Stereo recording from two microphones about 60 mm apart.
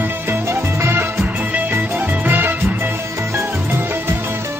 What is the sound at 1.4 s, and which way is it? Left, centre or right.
Music, right.